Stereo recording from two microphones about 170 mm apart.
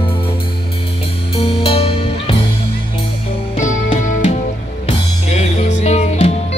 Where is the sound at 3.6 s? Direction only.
40° left (ahead or behind).